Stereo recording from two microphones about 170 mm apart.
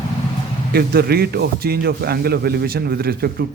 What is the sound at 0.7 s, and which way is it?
A man's voice, 65° right (ahead or behind).